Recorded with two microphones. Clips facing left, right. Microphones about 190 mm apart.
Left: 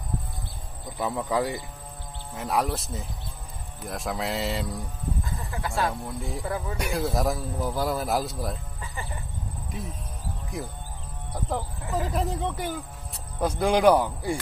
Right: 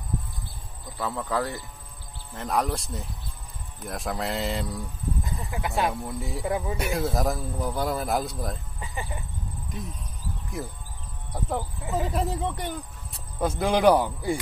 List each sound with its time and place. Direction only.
0.9 s a man's voice: 20° left (ahead or behind); by 4.7 s centre (ahead or behind)
5.2 s speech: 20° right (ahead or behind)
6.0 s a man's voice: centre (ahead or behind)
6.4 s speech: 20° right (ahead or behind)
6.8 s a man's voice: centre (ahead or behind)
8.8 s music: 20° right (ahead or behind)
9.7 s a man's voice: centre (ahead or behind)
12.1 s a man's voice: centre (ahead or behind)